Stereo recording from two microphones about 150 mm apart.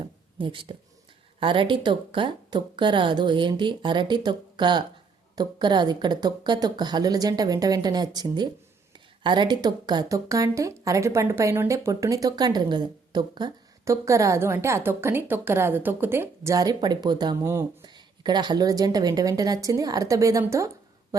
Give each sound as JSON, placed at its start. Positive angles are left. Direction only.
{"t": 0.3, "sound": "speech", "side_deg": -35}